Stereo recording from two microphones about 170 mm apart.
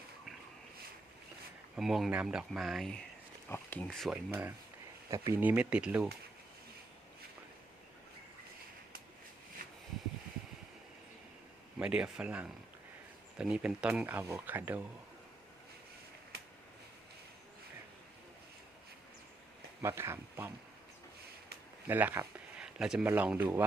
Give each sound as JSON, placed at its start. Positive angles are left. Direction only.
{"t": 1.7, "sound": "speech", "side_deg": 0}
{"t": 3.8, "sound": "speech", "side_deg": 0}
{"t": 5.1, "sound": "speech", "side_deg": -15}
{"t": 9.6, "sound": "a sound", "side_deg": -55}
{"t": 11.8, "sound": "speech", "side_deg": -5}
{"t": 19.8, "sound": "speech", "side_deg": -15}
{"t": 21.8, "sound": "speech", "side_deg": -10}